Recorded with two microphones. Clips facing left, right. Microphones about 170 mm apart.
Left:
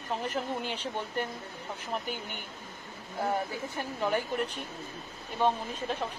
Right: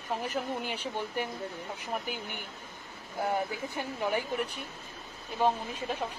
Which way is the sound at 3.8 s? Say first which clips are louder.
Left 1 dB; 10° right (ahead or behind).